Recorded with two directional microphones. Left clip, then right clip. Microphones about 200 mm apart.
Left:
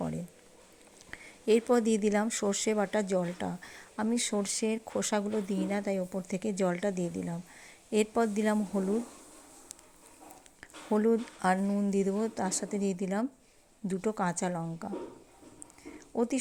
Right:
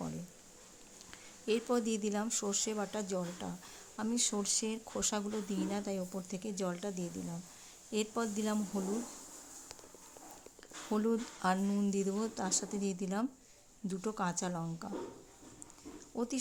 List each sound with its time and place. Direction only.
1.1 s speech: 20° left (ahead or behind)
10.9 s speech: 15° left (ahead or behind)
16.0 s a sound: 20° left (ahead or behind)